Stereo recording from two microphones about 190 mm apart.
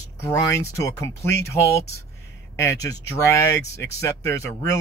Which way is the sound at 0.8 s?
15° left (ahead or behind).